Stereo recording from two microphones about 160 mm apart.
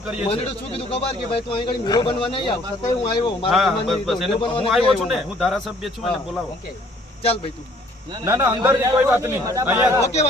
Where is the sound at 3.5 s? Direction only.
Centre (ahead or behind).